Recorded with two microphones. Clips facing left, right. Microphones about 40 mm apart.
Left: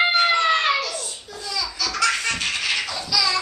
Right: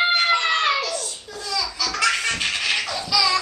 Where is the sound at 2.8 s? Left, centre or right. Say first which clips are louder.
Right 1 dB; centre.